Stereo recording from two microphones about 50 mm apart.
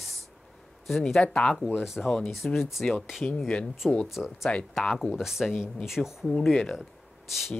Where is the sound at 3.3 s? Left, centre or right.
Centre.